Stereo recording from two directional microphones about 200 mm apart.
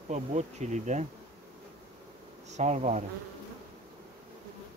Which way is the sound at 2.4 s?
35° right (ahead or behind).